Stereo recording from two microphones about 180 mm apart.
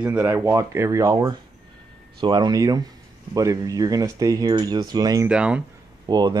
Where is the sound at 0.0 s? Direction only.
10° right (ahead or behind).